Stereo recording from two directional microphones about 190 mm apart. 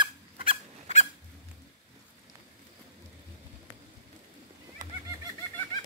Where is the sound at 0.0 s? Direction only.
30° right (ahead or behind).